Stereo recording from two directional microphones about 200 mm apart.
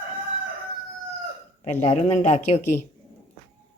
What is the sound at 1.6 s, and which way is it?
Speech, 30° left (ahead or behind).